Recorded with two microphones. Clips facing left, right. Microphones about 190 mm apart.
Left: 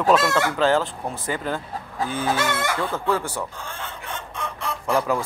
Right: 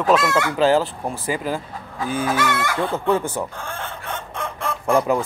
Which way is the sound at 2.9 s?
20° right (ahead or behind).